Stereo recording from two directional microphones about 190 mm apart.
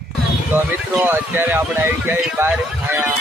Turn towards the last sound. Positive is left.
turn(degrees=-10)  # may be behind; listen again after turning